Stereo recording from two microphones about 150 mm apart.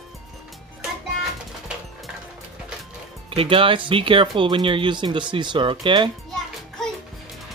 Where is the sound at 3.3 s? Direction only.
35° right (ahead or behind).